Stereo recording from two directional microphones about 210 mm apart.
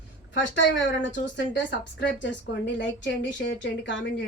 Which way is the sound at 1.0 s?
60° left (ahead or behind).